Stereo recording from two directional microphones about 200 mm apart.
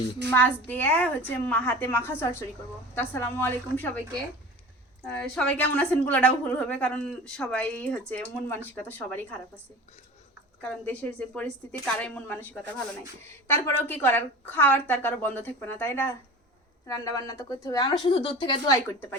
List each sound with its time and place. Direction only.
0.3 s a woman's voice: 10° left (ahead or behind)
5.3 s a woman's voice: 5° left (ahead or behind)
10.6 s a woman's voice: 10° left (ahead or behind)
13.5 s a woman's voice: 10° left (ahead or behind)